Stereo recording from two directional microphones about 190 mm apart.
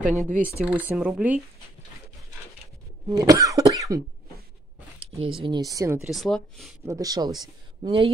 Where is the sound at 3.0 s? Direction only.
20° right (ahead or behind).